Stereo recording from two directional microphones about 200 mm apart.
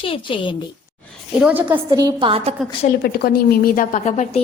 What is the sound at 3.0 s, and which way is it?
A woman's voice, 50° left (ahead or behind).